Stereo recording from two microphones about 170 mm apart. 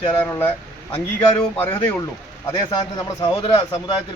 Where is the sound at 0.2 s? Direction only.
10° left (ahead or behind).